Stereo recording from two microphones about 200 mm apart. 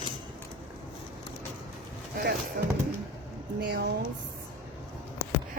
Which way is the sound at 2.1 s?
50° right (ahead or behind).